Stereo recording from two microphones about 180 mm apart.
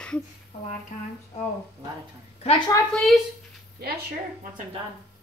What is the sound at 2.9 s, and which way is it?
Speech, centre (ahead or behind).